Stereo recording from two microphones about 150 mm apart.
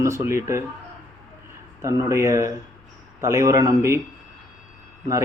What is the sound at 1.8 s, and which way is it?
Speech, 20° right (ahead or behind).